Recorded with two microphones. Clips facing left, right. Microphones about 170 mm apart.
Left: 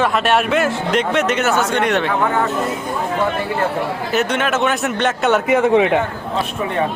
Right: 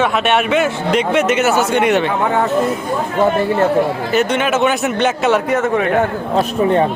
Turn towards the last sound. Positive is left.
turn(degrees=15)  # may be behind; listen again after turning